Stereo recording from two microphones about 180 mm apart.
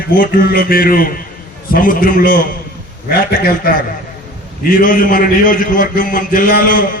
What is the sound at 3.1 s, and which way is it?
Speech, 60° left (ahead or behind).